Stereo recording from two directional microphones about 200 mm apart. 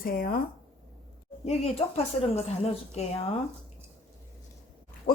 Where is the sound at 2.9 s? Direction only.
30° left (ahead or behind).